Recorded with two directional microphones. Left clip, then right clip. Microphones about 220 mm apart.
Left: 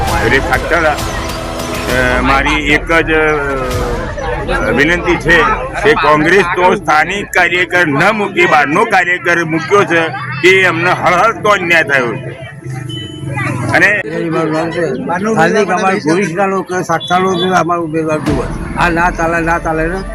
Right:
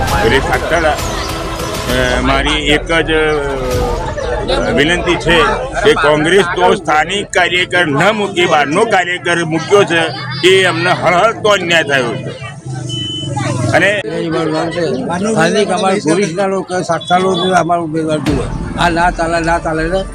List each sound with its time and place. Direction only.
0.3 s a man's voice: 10° right (ahead or behind)
2.0 s a man's voice: 10° right (ahead or behind)
4.6 s a man's voice: 15° right (ahead or behind)
13.7 s a man's voice: 15° right (ahead or behind)
15.4 s a man's voice: 5° right (ahead or behind)